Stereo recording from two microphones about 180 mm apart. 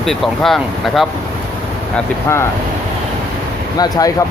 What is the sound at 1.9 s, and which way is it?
Speech, 15° left (ahead or behind).